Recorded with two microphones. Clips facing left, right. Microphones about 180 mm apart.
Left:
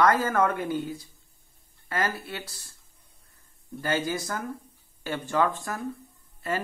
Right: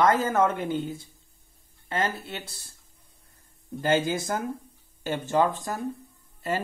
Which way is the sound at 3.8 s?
25° right (ahead or behind).